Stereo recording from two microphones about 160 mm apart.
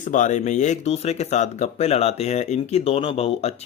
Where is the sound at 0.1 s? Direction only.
50° left (ahead or behind).